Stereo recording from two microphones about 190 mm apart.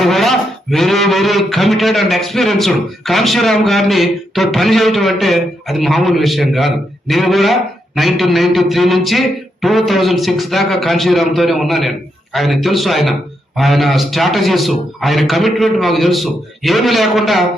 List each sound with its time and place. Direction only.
0.0 s speech: centre (ahead or behind)